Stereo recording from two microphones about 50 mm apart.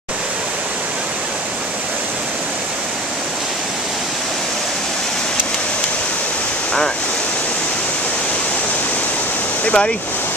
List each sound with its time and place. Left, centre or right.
9.7 s speech: centre